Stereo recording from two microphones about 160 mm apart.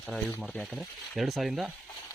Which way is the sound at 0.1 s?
5° left (ahead or behind).